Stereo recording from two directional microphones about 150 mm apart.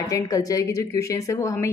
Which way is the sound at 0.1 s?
25° left (ahead or behind).